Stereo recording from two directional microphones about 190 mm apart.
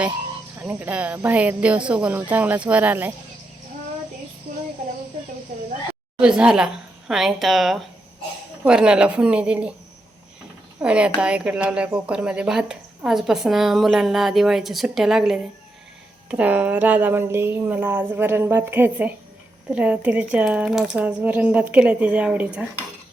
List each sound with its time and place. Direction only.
0.6 s speech: 10° right (ahead or behind)
6.1 s speech: 5° right (ahead or behind)
10.8 s speech: 5° right (ahead or behind)